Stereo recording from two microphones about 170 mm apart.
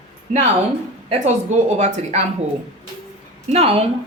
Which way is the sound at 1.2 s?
45° right (ahead or behind).